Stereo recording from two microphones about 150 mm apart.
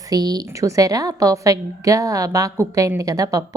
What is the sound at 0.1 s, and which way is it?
A woman's voice, 25° right (ahead or behind).